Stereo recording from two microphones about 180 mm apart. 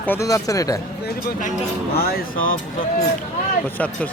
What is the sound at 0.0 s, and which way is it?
Speech, 15° left (ahead or behind).